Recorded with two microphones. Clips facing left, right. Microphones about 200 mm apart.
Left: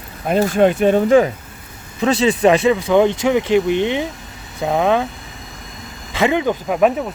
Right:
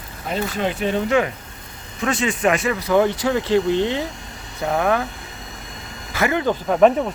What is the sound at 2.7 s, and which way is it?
Speech, 25° left (ahead or behind).